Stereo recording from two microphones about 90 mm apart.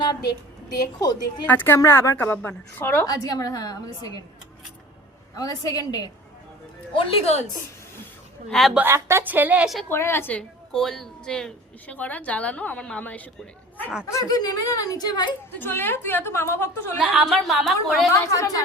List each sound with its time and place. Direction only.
0.0 s a woman's voice: 50° left (ahead or behind)
1.5 s a woman's voice: 25° left (ahead or behind)
3.1 s speech: 40° left (ahead or behind)
5.4 s speech: 45° left (ahead or behind)
6.9 s a woman's voice: 75° left (ahead or behind)
8.4 s a woman's voice: 5° left (ahead or behind)
8.8 s a woman's voice: 30° right (ahead or behind)
9.9 s a woman's voice: 25° left (ahead or behind)
10.3 s a woman's voice: 5° left (ahead or behind)
14.0 s speech: 35° left (ahead or behind)
15.5 s a woman's voice: 25° left (ahead or behind)
17.0 s a woman's voice: 5° right (ahead or behind)
18.1 s a woman's voice: 40° left (ahead or behind)